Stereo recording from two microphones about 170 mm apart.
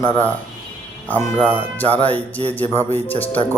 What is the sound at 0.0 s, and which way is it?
Speech, 15° right (ahead or behind).